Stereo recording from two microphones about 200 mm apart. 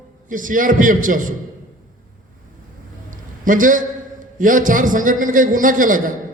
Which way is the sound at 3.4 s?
40° right (ahead or behind).